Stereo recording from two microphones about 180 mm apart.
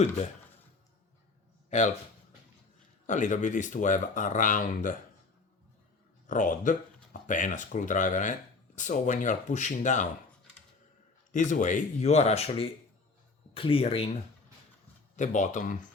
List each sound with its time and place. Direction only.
1.7 s speech: 45° left (ahead or behind)
3.1 s speech: 45° left (ahead or behind)
6.2 s speech: 45° left (ahead or behind)
11.3 s speech: 45° left (ahead or behind)
15.1 s speech: 45° left (ahead or behind)